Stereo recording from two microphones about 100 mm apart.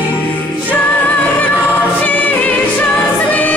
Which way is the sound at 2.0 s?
15° left (ahead or behind).